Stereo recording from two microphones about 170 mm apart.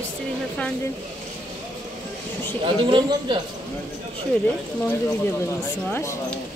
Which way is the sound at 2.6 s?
30° right (ahead or behind).